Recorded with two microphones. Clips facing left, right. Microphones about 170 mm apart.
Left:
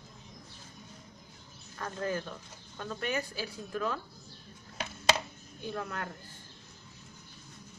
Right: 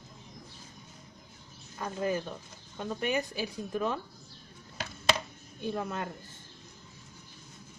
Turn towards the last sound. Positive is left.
turn(degrees=-20)  # may be behind; listen again after turning